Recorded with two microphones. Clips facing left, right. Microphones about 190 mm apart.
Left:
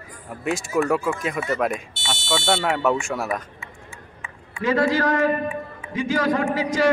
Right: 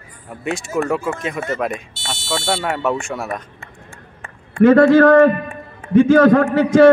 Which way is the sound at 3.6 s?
50° right (ahead or behind).